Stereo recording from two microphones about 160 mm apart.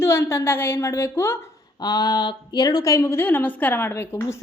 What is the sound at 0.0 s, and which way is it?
A woman's voice, 15° left (ahead or behind).